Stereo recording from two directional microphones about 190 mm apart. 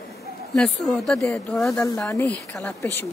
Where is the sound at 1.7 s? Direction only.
15° left (ahead or behind).